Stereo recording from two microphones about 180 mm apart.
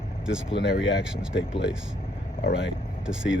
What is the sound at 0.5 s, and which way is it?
Speech, 75° left (ahead or behind).